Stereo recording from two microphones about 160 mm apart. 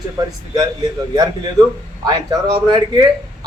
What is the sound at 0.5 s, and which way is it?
A man's voice, 25° right (ahead or behind).